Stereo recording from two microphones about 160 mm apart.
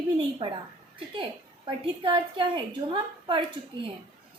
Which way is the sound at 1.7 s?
30° right (ahead or behind).